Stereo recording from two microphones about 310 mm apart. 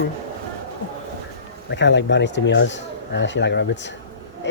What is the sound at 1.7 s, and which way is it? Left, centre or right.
Speech, left.